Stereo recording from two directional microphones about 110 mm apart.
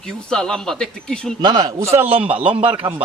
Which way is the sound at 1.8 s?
25° right (ahead or behind).